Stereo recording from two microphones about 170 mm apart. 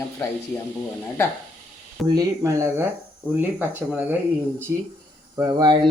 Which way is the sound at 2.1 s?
20° right (ahead or behind).